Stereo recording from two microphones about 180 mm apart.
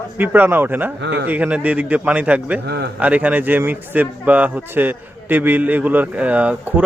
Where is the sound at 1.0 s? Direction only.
70° right (ahead or behind).